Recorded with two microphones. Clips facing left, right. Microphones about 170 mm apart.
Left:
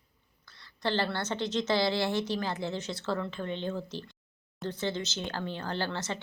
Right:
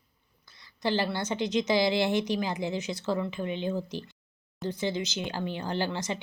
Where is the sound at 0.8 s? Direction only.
10° right (ahead or behind).